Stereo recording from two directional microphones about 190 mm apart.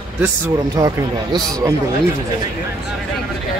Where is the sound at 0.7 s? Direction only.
20° right (ahead or behind).